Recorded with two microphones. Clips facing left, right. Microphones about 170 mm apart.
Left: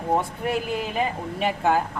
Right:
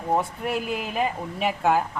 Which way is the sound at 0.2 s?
Centre (ahead or behind).